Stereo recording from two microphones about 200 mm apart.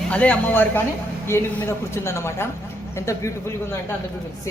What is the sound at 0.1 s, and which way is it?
Speech, 5° left (ahead or behind).